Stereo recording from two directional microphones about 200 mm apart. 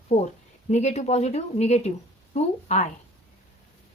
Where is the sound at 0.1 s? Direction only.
30° left (ahead or behind).